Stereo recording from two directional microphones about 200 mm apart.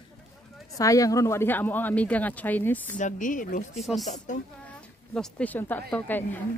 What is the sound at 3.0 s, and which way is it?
Speech, 40° left (ahead or behind).